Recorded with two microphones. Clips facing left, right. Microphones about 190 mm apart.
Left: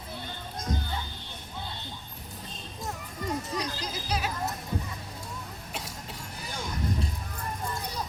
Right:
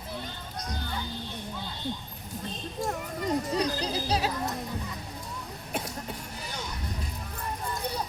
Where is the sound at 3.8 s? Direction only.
35° right (ahead or behind).